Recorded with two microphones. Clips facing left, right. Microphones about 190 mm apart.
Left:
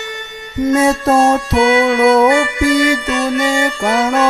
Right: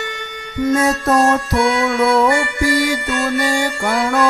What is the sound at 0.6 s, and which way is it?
Music, 25° left (ahead or behind).